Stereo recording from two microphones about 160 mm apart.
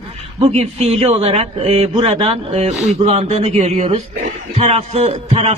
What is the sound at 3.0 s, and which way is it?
A man's voice, 40° right (ahead or behind).